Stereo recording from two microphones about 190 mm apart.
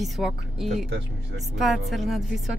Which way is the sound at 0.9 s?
60° right (ahead or behind).